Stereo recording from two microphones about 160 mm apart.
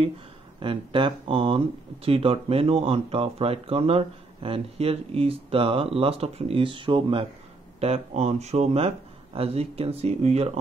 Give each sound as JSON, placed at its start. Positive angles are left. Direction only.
{"t": 0.6, "sound": "speech", "side_deg": -30}